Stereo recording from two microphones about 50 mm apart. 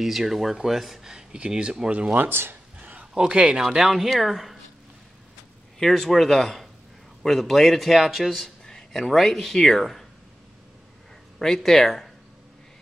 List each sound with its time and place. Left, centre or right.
0.0 s speech: centre
2.1 s speech: right
2.8 s a sound: right
3.2 s speech: right
3.6 s a man's voice: centre
5.8 s a man's voice: centre
8.6 s speech: centre
11.3 s speech: centre